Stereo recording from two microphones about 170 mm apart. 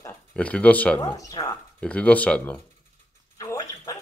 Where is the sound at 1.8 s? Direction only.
10° left (ahead or behind).